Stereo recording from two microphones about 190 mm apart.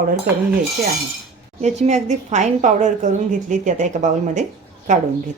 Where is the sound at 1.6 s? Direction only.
35° right (ahead or behind).